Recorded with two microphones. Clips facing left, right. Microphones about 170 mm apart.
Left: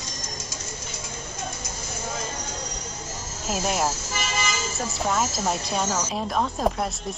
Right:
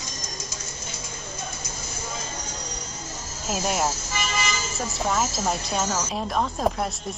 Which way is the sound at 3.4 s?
Centre (ahead or behind).